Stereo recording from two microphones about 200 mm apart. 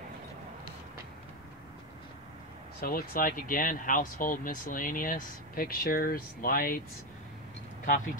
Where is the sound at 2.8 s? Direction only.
50° left (ahead or behind).